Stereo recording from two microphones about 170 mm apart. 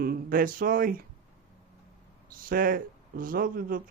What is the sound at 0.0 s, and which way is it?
Speech, 60° right (ahead or behind).